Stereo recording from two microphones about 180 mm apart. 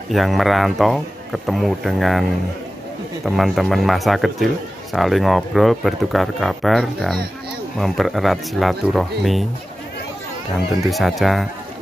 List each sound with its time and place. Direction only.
0.1 s speech: centre (ahead or behind)
3.3 s speech: centre (ahead or behind)
10.8 s speech: centre (ahead or behind)